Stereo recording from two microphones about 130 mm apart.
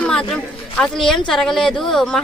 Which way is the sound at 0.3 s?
5° left (ahead or behind).